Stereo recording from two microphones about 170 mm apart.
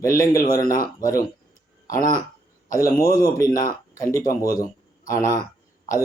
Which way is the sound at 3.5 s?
55° left (ahead or behind).